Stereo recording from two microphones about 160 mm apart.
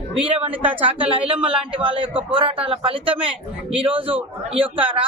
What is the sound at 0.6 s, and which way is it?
Speech, 10° right (ahead or behind).